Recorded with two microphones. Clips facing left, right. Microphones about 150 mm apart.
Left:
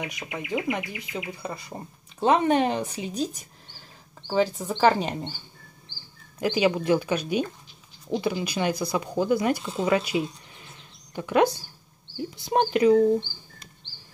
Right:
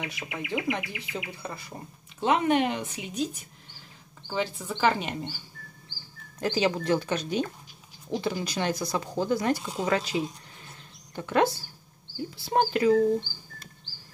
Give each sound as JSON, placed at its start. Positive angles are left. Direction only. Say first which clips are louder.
{"t": 0.0, "sound": "speech", "louder": "left 2 dB", "side_deg": 15}
{"t": 2.1, "sound": "speech", "louder": "left 3 dB", "side_deg": 35}
{"t": 4.3, "sound": "speech", "louder": "left 6 dB", "side_deg": 40}
{"t": 6.4, "sound": "speech", "louder": "left 3 dB", "side_deg": 10}